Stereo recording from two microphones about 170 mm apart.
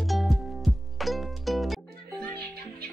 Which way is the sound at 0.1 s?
Centre (ahead or behind).